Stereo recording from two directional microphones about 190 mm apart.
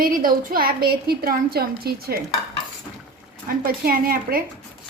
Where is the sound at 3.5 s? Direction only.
50° right (ahead or behind).